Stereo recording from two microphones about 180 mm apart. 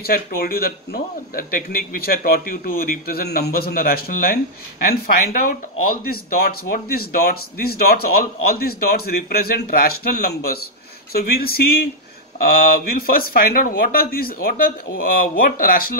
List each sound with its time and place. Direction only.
0.0 s a man's voice: 55° left (ahead or behind)